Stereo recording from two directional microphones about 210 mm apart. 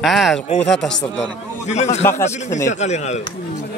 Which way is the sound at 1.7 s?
30° left (ahead or behind).